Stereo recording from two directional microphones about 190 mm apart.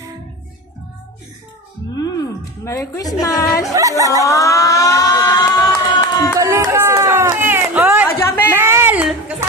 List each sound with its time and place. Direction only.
1.9 s a woman's voice: 20° left (ahead or behind)
3.8 s speech: 15° right (ahead or behind)
4.2 s crowd: 15° left (ahead or behind)
6.3 s run: 15° right (ahead or behind)
8.0 s a sound: 10° left (ahead or behind)
8.5 s a sound: 10° right (ahead or behind)